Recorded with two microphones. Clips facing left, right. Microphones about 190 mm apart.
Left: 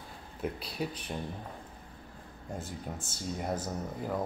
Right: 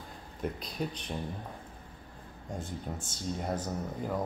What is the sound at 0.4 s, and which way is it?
Speech, 5° left (ahead or behind).